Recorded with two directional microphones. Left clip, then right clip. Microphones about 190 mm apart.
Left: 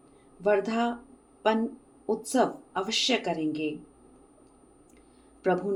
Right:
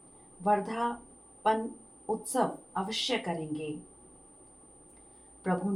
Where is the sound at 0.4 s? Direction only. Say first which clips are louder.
Left 3 dB; 45° left (ahead or behind).